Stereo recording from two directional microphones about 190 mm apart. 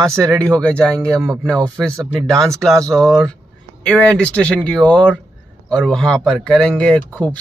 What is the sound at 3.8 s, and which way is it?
Speech, 5° left (ahead or behind).